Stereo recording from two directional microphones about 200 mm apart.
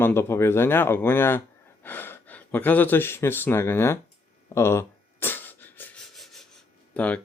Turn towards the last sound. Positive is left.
turn(degrees=5)  # may be behind; listen again after turning